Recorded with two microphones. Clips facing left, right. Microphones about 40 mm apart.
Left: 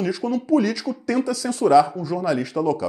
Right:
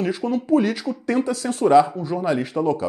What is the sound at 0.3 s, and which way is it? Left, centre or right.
Speech, right.